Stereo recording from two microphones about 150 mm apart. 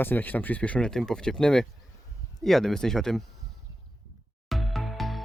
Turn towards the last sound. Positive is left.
turn(degrees=0)  # may be behind; listen again after turning